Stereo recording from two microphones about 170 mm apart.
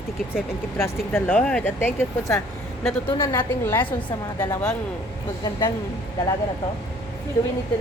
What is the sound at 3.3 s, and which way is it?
Speech, 10° left (ahead or behind).